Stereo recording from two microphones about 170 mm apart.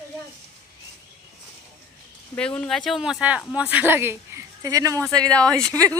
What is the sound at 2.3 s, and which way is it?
A woman's voice, 5° left (ahead or behind).